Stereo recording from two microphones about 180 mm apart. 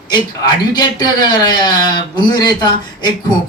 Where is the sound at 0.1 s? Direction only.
25° left (ahead or behind).